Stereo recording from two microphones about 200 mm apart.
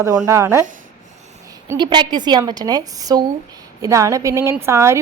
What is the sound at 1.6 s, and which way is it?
A woman's voice, 20° right (ahead or behind).